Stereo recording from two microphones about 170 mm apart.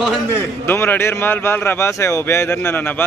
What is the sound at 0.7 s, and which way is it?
Speech, 15° left (ahead or behind).